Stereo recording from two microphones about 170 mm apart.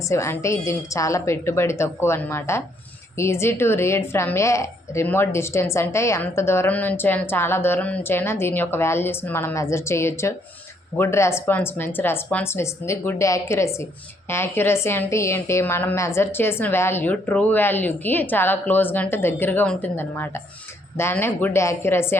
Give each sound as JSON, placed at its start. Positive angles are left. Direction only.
{"t": 0.1, "sound": "a woman's voice", "side_deg": 15}